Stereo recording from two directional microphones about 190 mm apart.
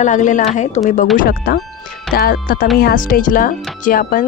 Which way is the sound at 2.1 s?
50° left (ahead or behind).